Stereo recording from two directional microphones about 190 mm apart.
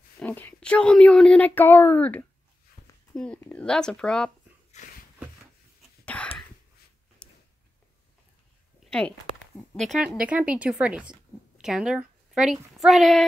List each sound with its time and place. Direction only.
0.2 s speech: 10° left (ahead or behind)
2.8 s a sound: 35° left (ahead or behind)
3.2 s speech: 5° left (ahead or behind)
5.8 s whispering: 5° left (ahead or behind)
7.2 s a sound: 5° left (ahead or behind)
9.8 s speech: centre (ahead or behind)